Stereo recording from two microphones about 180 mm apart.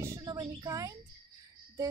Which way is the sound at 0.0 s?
15° right (ahead or behind).